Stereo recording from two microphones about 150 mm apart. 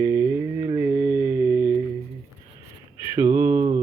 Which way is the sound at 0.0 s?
15° right (ahead or behind).